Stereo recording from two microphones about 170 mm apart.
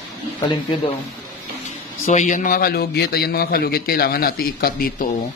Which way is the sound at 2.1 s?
45° left (ahead or behind).